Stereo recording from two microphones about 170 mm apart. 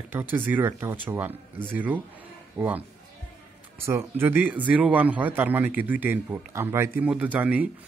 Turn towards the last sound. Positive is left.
turn(degrees=-10)  # may be behind; listen again after turning